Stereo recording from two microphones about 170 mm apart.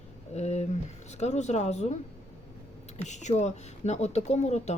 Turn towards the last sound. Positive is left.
turn(degrees=40)  # may be behind; listen again after turning